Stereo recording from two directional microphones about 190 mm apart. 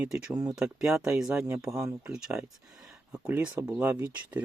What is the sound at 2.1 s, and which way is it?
Speech, 5° right (ahead or behind).